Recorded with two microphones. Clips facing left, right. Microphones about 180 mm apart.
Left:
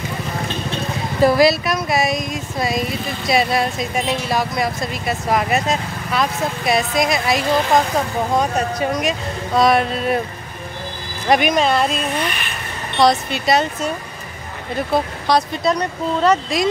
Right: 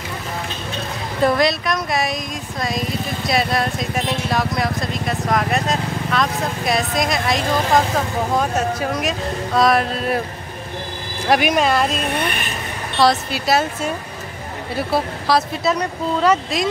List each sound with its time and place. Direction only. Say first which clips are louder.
1.2 s speech: left 3 dB; 5° left (ahead or behind)
11.2 s speech: left 1 dB; 5° right (ahead or behind)
12.0 s speech: even; 55° right (ahead or behind)
13.0 s speech: left 1 dB; 5° right (ahead or behind)